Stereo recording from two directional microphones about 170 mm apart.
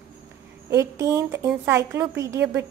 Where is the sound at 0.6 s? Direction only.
15° right (ahead or behind).